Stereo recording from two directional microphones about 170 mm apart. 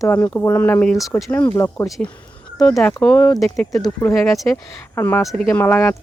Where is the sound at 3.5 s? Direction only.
20° left (ahead or behind).